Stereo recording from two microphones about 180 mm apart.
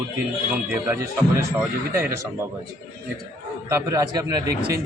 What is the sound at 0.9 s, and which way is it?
Speech, 15° right (ahead or behind).